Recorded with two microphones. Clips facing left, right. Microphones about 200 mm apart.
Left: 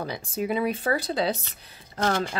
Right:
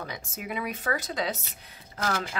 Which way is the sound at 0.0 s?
35° left (ahead or behind).